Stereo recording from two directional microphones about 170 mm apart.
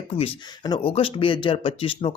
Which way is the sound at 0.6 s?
25° left (ahead or behind).